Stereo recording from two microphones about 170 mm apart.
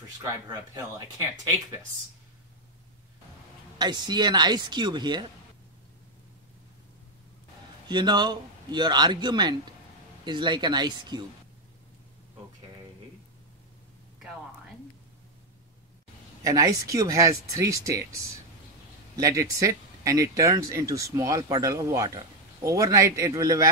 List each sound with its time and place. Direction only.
0.7 s speech: 20° right (ahead or behind)
3.7 s speech: 25° right (ahead or behind)
7.9 s speech: 25° right (ahead or behind)
16.4 s speech: 20° right (ahead or behind)
19.1 s speech: 20° right (ahead or behind)